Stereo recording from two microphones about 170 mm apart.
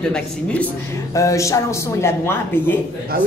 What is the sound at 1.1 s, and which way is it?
Speech, 20° left (ahead or behind).